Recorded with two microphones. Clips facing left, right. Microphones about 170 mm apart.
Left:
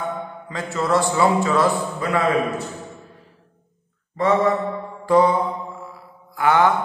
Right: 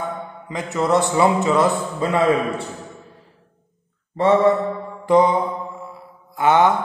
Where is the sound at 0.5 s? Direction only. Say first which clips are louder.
Right 2 dB; 20° right (ahead or behind).